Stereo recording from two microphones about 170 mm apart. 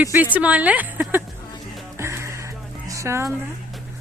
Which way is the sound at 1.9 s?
15° right (ahead or behind).